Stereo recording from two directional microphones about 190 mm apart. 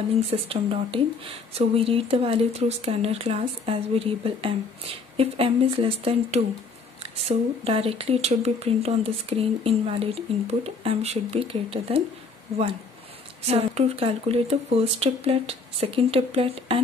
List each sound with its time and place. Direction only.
0.3 s speech: 30° right (ahead or behind)
13.5 s speech: 30° right (ahead or behind)